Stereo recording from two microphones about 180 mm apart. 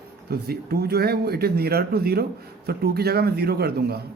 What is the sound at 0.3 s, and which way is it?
A man's voice, 60° right (ahead or behind).